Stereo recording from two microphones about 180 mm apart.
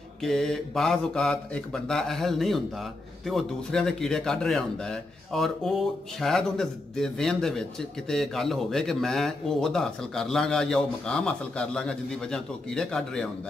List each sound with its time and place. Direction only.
0.2 s speech: centre (ahead or behind)